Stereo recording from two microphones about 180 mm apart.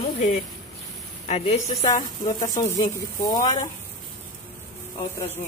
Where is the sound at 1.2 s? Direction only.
35° left (ahead or behind).